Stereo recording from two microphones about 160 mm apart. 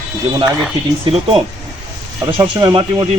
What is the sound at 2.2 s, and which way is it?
Speech, 30° right (ahead or behind).